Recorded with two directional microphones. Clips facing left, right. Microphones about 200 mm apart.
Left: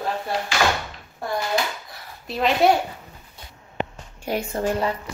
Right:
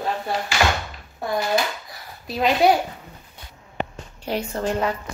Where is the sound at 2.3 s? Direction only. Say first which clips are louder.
Right 1 dB; centre (ahead or behind).